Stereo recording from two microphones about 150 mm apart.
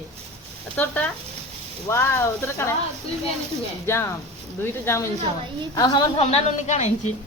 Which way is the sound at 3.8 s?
15° left (ahead or behind).